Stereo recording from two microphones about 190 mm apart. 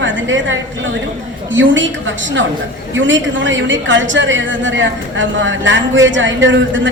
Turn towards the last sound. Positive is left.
turn(degrees=-75)  # may be behind; listen again after turning